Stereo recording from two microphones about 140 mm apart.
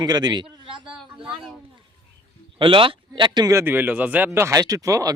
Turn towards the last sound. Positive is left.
turn(degrees=-25)  # may be behind; listen again after turning